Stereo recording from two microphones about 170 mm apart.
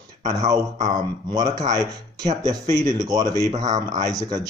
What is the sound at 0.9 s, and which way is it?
Speech, 20° right (ahead or behind).